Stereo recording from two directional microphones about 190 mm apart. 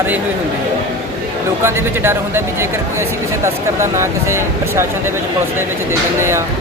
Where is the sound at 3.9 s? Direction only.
15° right (ahead or behind).